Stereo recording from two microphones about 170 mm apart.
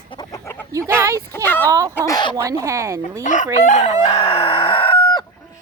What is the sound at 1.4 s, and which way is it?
Speech, 10° left (ahead or behind).